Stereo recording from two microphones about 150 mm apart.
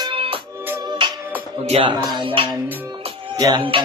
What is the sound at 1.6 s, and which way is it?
Music, 45° right (ahead or behind).